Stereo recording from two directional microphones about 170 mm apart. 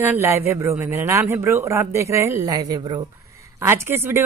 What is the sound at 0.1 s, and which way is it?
Speech, 15° right (ahead or behind).